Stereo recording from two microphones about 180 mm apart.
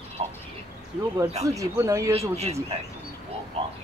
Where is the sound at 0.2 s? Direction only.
35° right (ahead or behind).